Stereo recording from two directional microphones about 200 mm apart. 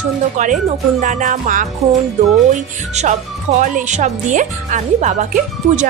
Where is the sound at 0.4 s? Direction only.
40° right (ahead or behind).